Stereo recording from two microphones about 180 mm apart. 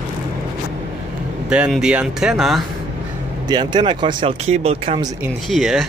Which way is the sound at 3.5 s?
25° right (ahead or behind).